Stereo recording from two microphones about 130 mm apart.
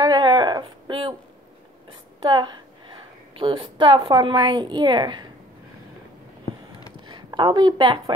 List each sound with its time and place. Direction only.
0.0 s a sound: 35° right (ahead or behind)
1.9 s a woman's voice: 40° right (ahead or behind)
7.1 s a woman's voice: 30° right (ahead or behind)